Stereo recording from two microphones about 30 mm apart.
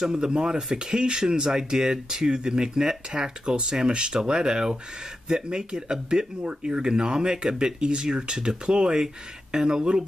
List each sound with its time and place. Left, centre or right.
0.1 s speech: right
7.8 s speech: right